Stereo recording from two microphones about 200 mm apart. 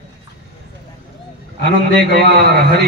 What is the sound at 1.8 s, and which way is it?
A man's voice, 50° right (ahead or behind).